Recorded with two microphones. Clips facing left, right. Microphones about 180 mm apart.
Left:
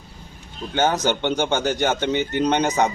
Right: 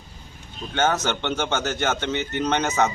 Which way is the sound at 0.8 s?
10° left (ahead or behind).